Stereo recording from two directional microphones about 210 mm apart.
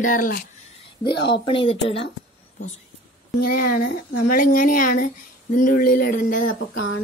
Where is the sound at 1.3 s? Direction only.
25° left (ahead or behind).